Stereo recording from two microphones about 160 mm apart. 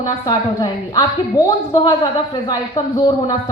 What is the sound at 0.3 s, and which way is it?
A woman's voice, 25° left (ahead or behind).